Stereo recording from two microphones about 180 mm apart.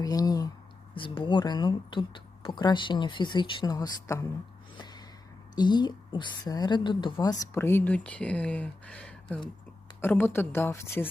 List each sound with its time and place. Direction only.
0.0 s a sound: 20° left (ahead or behind)
0.9 s speech: 30° left (ahead or behind)
4.8 s gasp: 25° left (ahead or behind)
5.5 s a woman's voice: 25° left (ahead or behind)